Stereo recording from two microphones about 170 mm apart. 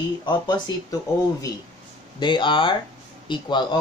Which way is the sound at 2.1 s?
30° left (ahead or behind).